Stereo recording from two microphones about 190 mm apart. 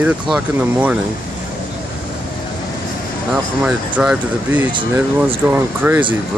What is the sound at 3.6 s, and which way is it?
Speech, 5° right (ahead or behind).